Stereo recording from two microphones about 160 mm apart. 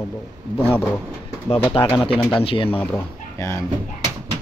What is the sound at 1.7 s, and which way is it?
Speech, 35° left (ahead or behind).